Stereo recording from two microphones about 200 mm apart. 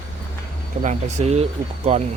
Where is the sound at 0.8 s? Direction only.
35° right (ahead or behind).